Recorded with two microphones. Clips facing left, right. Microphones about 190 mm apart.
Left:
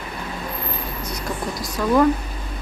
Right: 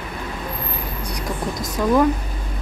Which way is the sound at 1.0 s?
15° right (ahead or behind).